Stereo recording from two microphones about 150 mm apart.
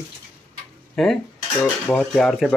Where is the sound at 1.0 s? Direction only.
Centre (ahead or behind).